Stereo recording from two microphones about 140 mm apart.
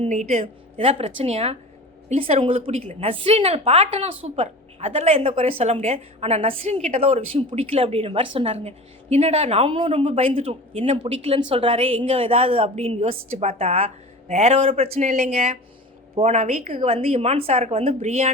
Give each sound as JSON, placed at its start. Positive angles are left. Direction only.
{"t": 0.1, "sound": "a woman's voice", "side_deg": -55}